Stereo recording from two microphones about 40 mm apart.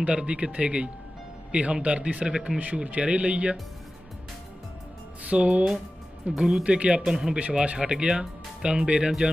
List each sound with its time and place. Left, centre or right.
0.0 s speech: right
2.3 s speech: right
2.6 s speech: right
5.3 s speech: right
7.1 s speech: centre